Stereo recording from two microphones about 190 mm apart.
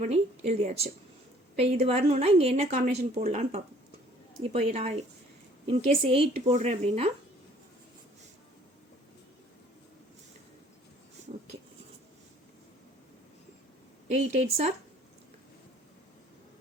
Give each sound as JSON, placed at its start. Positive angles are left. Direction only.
{"t": 0.0, "sound": "a woman's voice", "side_deg": -35}
{"t": 14.2, "sound": "a woman's voice", "side_deg": -35}